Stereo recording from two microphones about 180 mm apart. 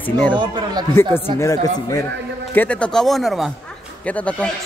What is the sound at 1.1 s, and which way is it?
Speech, 15° left (ahead or behind).